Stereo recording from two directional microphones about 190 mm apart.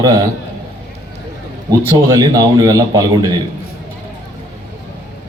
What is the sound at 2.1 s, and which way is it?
Speech, 20° right (ahead or behind).